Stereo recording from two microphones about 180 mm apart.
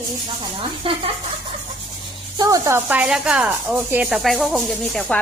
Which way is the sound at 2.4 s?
15° right (ahead or behind).